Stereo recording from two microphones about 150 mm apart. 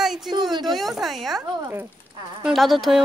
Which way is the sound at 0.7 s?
Centre (ahead or behind).